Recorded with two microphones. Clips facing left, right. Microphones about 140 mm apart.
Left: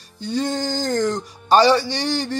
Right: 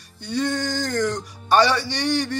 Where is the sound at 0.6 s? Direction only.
25° left (ahead or behind).